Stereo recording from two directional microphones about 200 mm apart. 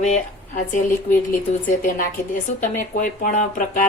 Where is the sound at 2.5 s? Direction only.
35° left (ahead or behind).